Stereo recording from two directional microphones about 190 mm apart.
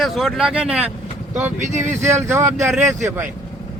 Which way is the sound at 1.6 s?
40° right (ahead or behind).